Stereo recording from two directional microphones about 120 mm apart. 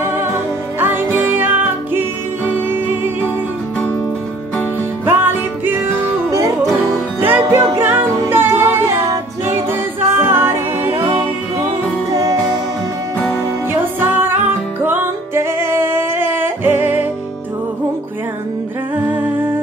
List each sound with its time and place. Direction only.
0.0 s music: 20° right (ahead or behind)
5.0 s music: 15° right (ahead or behind)
7.2 s music: 15° right (ahead or behind)
12.1 s music: 30° right (ahead or behind)
13.7 s music: 20° right (ahead or behind)
18.9 s music: 15° right (ahead or behind)